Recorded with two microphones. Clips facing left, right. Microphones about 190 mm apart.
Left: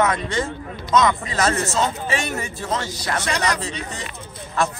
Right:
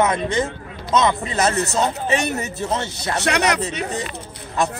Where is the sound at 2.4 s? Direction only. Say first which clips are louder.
Right 2 dB; 20° right (ahead or behind).